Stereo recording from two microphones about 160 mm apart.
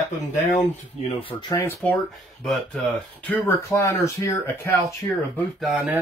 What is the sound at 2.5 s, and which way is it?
Speech, 5° left (ahead or behind).